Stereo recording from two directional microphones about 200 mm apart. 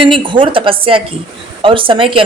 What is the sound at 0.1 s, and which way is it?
A woman's voice, 25° right (ahead or behind).